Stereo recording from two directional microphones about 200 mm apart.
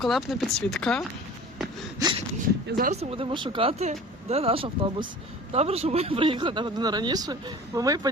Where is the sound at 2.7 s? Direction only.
45° right (ahead or behind).